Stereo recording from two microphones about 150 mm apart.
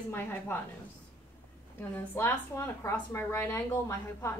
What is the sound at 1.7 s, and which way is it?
A woman's voice, 15° left (ahead or behind).